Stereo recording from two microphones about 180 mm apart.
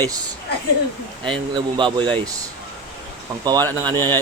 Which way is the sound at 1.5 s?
25° right (ahead or behind).